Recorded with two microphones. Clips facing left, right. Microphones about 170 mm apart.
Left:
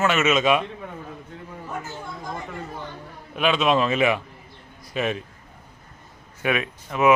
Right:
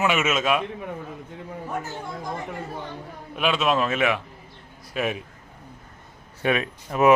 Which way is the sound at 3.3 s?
5° right (ahead or behind).